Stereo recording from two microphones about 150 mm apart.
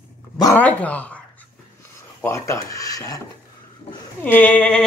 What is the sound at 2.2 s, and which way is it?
Speech, 20° left (ahead or behind).